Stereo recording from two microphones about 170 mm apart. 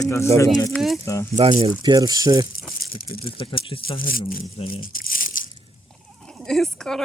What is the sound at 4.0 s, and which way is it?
Speech, 55° left (ahead or behind).